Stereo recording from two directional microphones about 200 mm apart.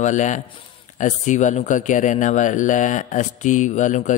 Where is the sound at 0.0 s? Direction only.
35° left (ahead or behind).